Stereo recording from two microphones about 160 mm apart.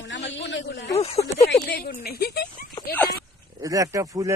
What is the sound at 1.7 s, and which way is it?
Speech, 70° left (ahead or behind).